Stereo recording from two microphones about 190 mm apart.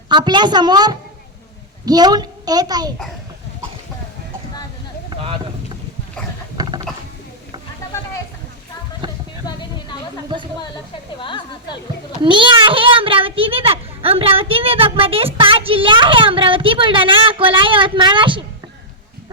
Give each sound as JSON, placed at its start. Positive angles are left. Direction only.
{"t": 0.1, "sound": "a child's voice", "side_deg": -25}
{"t": 5.0, "sound": "a sound", "side_deg": -30}
{"t": 6.6, "sound": "mechanisms", "side_deg": -20}
{"t": 9.0, "sound": "a sound", "side_deg": -25}
{"t": 10.2, "sound": "speech", "side_deg": -25}
{"t": 11.2, "sound": "a woman's voice", "side_deg": 25}
{"t": 12.2, "sound": "a child's voice", "side_deg": -25}